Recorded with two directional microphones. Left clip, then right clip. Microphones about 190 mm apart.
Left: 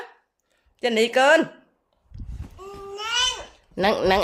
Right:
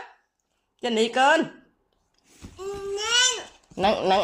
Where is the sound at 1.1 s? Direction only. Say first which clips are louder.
Left 3 dB; 25° left (ahead or behind).